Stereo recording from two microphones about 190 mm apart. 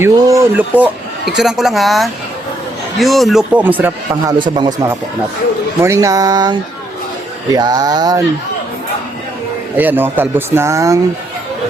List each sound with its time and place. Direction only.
0.0 s a woman's voice: 15° right (ahead or behind)
4.4 s a sound: 25° right (ahead or behind)
9.7 s speech: 10° right (ahead or behind)